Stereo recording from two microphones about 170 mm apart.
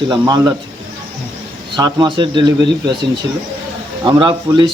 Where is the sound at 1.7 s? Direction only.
25° right (ahead or behind).